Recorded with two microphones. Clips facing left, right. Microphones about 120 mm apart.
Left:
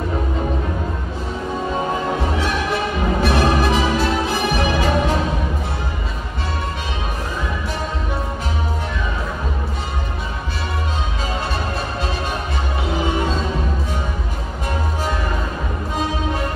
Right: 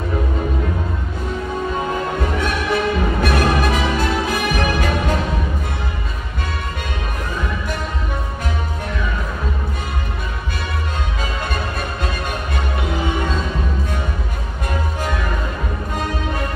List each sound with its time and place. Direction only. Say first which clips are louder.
2.3 s music: right 1 dB; 50° right (ahead or behind)